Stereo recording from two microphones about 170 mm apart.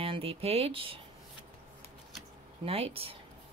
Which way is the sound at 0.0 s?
35° right (ahead or behind).